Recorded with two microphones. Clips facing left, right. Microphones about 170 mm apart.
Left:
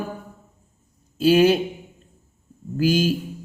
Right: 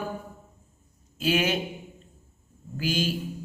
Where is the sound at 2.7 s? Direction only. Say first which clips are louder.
Left 8 dB; 45° left (ahead or behind).